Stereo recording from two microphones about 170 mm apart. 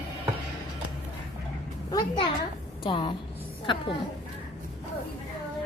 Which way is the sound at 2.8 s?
30° left (ahead or behind).